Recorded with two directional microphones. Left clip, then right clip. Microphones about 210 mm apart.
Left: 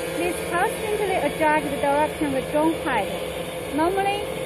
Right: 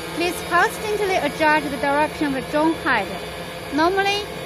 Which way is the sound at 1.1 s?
50° right (ahead or behind).